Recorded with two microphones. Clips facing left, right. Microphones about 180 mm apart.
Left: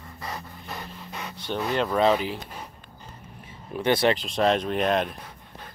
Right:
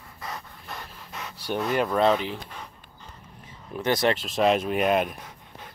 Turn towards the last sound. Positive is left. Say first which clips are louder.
# left 1 dB
turn(degrees=-10)  # may be behind; listen again after turning